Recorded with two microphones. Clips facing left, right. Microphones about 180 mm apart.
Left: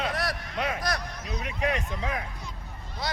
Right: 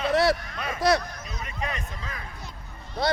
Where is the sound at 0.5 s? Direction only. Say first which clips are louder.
Right 6 dB; 70° left (ahead or behind).